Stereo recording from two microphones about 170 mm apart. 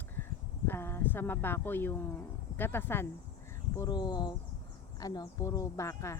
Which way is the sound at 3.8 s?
25° left (ahead or behind).